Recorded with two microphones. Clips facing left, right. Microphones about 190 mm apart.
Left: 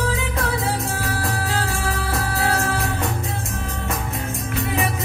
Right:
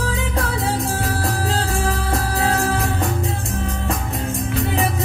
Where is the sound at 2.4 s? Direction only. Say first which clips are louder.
Right 2 dB; 35° right (ahead or behind).